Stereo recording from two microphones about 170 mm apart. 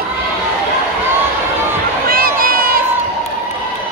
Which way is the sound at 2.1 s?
55° right (ahead or behind).